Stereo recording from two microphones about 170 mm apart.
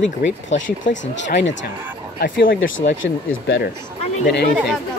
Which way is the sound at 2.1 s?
60° left (ahead or behind).